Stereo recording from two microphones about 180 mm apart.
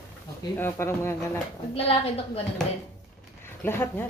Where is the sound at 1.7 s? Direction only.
30° left (ahead or behind).